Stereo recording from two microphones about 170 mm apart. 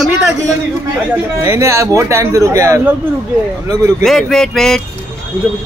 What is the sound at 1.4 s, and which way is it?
Speech, 15° right (ahead or behind).